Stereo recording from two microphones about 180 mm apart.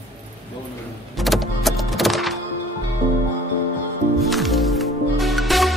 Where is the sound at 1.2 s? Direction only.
Centre (ahead or behind).